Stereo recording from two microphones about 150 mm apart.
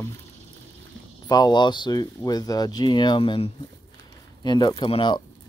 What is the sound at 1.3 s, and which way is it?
Speech, 25° left (ahead or behind).